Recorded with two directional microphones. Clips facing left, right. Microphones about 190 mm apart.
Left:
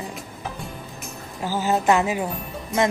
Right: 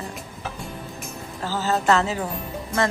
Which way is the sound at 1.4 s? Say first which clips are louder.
Left 2 dB; 15° left (ahead or behind).